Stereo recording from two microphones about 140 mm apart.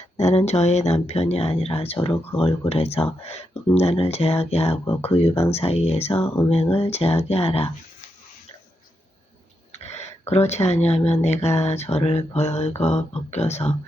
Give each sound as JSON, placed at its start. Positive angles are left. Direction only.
{"t": 0.2, "sound": "speech", "side_deg": 50}
{"t": 9.7, "sound": "speech", "side_deg": 50}